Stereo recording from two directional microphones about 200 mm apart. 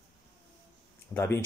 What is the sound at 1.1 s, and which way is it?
Speech, 15° left (ahead or behind).